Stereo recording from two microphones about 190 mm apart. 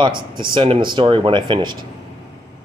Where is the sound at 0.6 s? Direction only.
25° right (ahead or behind).